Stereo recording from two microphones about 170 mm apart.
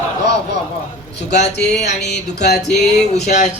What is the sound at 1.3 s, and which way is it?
Speech, 80° left.